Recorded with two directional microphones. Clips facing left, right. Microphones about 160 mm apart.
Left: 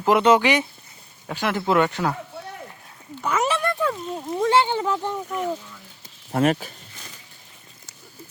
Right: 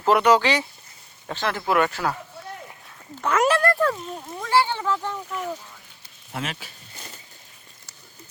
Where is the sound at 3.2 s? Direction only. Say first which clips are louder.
Right 2 dB; 10° left (ahead or behind).